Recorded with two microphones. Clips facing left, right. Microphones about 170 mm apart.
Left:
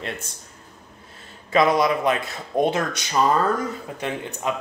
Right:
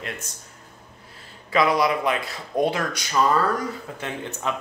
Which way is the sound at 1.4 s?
25° left (ahead or behind).